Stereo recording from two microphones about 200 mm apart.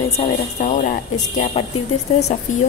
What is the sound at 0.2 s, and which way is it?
Speech, 35° left (ahead or behind).